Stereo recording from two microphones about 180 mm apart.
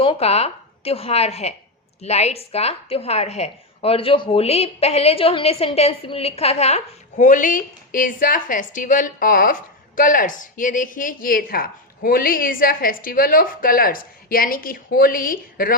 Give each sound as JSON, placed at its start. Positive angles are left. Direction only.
{"t": 0.0, "sound": "a woman's voice", "side_deg": 30}